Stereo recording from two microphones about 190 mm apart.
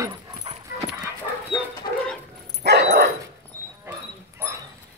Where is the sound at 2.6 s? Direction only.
60° right (ahead or behind).